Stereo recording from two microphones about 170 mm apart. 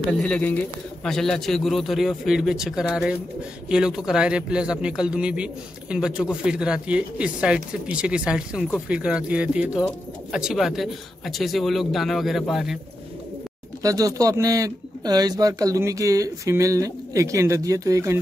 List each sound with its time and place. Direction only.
0.2 s speech: 10° left (ahead or behind)
13.8 s a man's voice: 20° right (ahead or behind)